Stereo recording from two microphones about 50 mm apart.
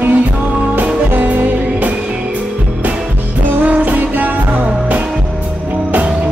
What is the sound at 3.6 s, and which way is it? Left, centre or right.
Music, right.